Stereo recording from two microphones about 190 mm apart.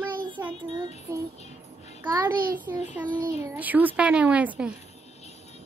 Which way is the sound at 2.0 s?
15° right (ahead or behind).